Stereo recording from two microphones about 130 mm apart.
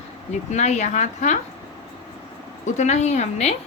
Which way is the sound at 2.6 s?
65° left (ahead or behind).